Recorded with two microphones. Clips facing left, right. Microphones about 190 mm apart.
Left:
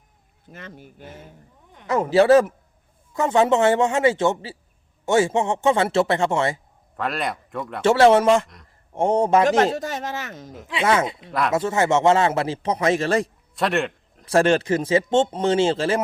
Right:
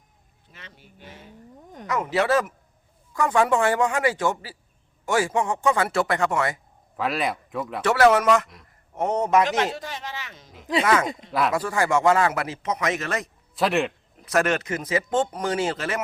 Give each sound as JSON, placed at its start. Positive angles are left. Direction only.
{"t": 0.5, "sound": "speech", "side_deg": 50}
{"t": 1.9, "sound": "a man's voice", "side_deg": 30}
{"t": 6.9, "sound": "speech", "side_deg": 0}
{"t": 7.8, "sound": "a man's voice", "side_deg": 25}
{"t": 9.7, "sound": "speech", "side_deg": 45}
{"t": 11.0, "sound": "speech", "side_deg": -45}
{"t": 11.3, "sound": "speech", "side_deg": 0}
{"t": 11.5, "sound": "a man's voice", "side_deg": 25}
{"t": 13.6, "sound": "a man's voice", "side_deg": 0}
{"t": 14.3, "sound": "a man's voice", "side_deg": 30}